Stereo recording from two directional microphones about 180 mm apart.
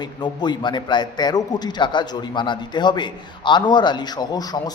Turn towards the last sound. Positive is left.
turn(degrees=20)  # may be behind; listen again after turning